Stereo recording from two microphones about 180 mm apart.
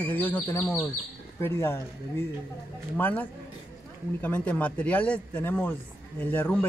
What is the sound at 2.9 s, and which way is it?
Speech, 10° left (ahead or behind).